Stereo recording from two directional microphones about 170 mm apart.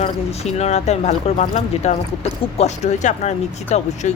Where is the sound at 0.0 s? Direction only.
40° left (ahead or behind).